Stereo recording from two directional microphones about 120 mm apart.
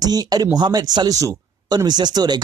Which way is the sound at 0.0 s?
30° right (ahead or behind).